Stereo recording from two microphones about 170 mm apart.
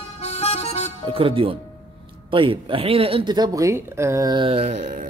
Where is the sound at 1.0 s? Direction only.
30° right (ahead or behind).